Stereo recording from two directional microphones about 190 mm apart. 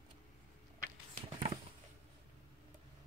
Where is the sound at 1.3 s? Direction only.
25° right (ahead or behind).